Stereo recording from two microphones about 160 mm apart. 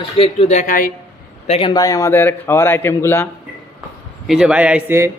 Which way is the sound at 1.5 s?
40° left (ahead or behind).